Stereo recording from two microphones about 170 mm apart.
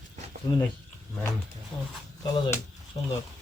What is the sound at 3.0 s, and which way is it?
Speech, 30° left (ahead or behind).